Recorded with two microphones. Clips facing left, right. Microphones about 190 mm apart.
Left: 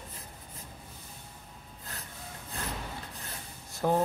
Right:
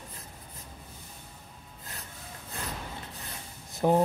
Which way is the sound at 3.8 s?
15° right (ahead or behind).